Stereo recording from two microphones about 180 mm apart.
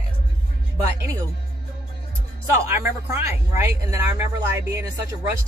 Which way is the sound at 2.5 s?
15° right (ahead or behind).